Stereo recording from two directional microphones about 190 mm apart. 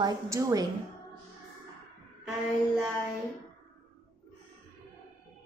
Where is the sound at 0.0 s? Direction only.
15° right (ahead or behind).